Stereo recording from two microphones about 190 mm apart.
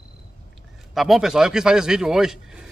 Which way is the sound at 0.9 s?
Centre (ahead or behind).